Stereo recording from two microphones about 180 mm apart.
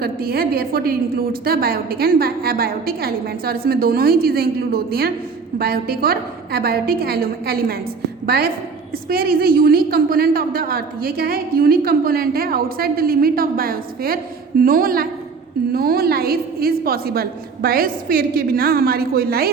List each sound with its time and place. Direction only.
0.0 s a woman's voice: 55° right (ahead or behind)